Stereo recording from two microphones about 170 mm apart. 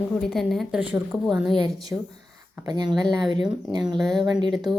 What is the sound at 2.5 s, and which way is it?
Speech, 20° right (ahead or behind).